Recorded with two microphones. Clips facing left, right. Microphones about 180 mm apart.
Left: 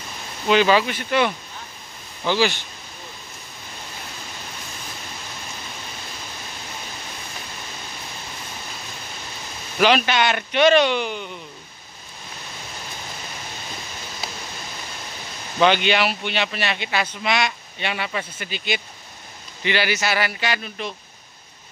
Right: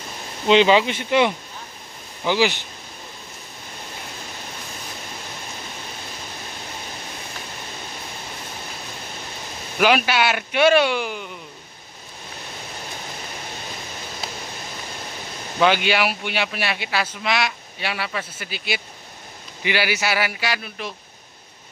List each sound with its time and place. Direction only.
0.5 s speech: 20° right (ahead or behind)
9.8 s speech: 5° right (ahead or behind)
15.6 s speech: 5° right (ahead or behind)